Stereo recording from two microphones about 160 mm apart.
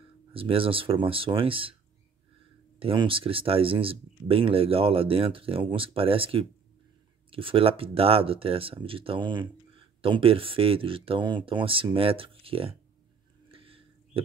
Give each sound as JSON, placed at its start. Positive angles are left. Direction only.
{"t": 0.3, "sound": "speech", "side_deg": -35}
{"t": 2.8, "sound": "speech", "side_deg": -35}
{"t": 13.5, "sound": "a sound", "side_deg": -35}